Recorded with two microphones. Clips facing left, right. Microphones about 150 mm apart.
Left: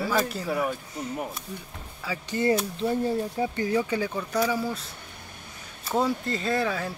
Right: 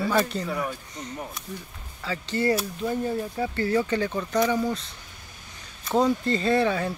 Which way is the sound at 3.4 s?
15° left (ahead or behind).